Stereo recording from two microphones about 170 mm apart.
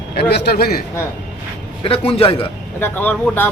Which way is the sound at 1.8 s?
35° left (ahead or behind).